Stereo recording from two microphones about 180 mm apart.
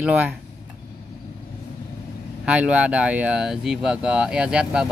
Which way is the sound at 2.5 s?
5° right (ahead or behind).